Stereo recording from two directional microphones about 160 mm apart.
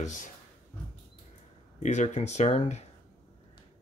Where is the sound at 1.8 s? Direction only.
45° left (ahead or behind).